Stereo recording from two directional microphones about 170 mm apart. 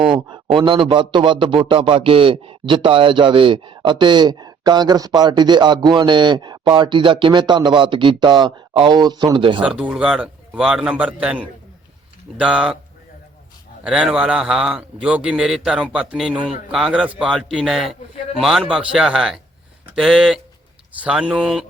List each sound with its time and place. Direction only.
0.1 s a man's voice: 30° right (ahead or behind)
9.6 s a man's voice: 5° right (ahead or behind)
13.8 s a man's voice: 5° right (ahead or behind)